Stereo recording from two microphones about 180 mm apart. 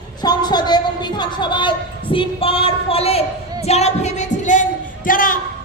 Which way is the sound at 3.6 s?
35° left (ahead or behind).